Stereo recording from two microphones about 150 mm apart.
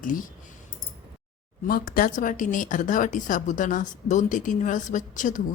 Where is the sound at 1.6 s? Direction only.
70° left (ahead or behind).